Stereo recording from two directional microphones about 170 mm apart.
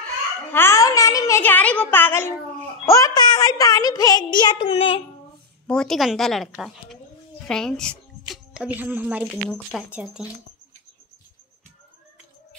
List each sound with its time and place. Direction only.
0.5 s a child's voice: 15° left (ahead or behind)
2.8 s child singing: 20° left (ahead or behind); by 5.0 s 35° left (ahead or behind)
5.7 s a woman's voice: 5° left (ahead or behind)